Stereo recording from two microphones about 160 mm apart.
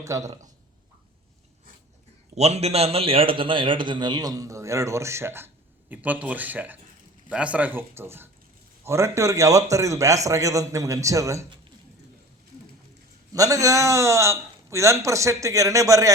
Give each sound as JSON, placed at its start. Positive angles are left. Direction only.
{"t": 0.0, "sound": "a man's voice", "side_deg": -20}
{"t": 2.3, "sound": "a man's voice", "side_deg": -40}
{"t": 13.3, "sound": "a man's voice", "side_deg": -20}